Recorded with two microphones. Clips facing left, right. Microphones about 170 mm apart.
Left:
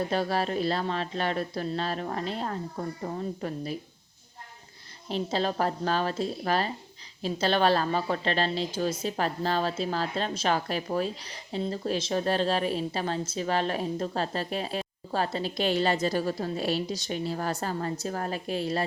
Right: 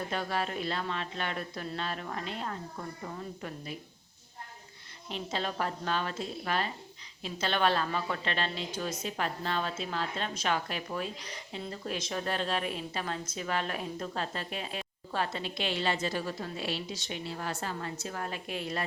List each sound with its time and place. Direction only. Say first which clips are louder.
0.1 s a woman's voice: left 6 dB; 35° left (ahead or behind)
5.0 s a woman's voice: left 7 dB; 35° left (ahead or behind)